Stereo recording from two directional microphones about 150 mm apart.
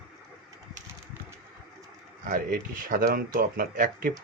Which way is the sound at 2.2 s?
65° right (ahead or behind).